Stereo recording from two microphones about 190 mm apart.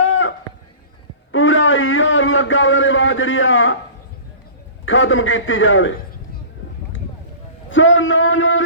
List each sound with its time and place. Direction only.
0.1 s a sound: 90° left
4.9 s a man's voice: 90° left
7.7 s a man's voice: 85° left